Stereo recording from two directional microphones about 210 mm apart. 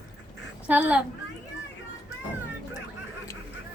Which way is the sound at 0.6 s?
5° right (ahead or behind).